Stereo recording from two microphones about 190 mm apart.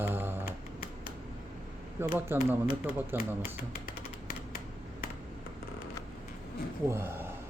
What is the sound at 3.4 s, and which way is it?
Computer keyboard, 50° left (ahead or behind).